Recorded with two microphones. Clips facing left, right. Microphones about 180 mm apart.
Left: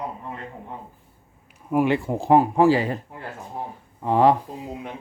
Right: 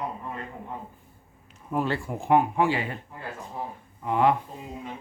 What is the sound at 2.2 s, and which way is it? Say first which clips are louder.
Speech: left 5 dB; 35° left (ahead or behind).